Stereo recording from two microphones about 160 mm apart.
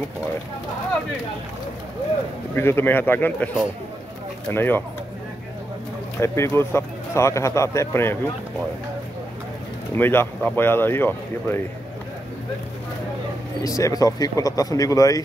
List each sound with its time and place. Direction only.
2.5 s a man's voice: 15° left (ahead or behind)
6.2 s a man's voice: 15° left (ahead or behind)
9.9 s a man's voice: 15° left (ahead or behind)
13.7 s speech: 20° left (ahead or behind)